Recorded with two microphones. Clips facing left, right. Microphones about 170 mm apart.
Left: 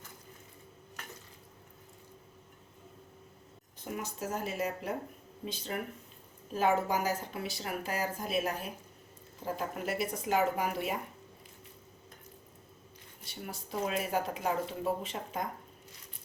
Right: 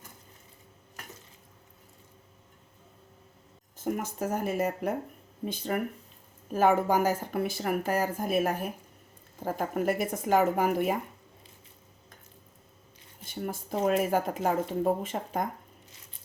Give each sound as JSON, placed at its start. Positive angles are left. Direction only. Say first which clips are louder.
{"t": 3.8, "sound": "speech", "louder": "right 7 dB", "side_deg": -50}
{"t": 13.2, "sound": "speech", "louder": "right 8 dB", "side_deg": -50}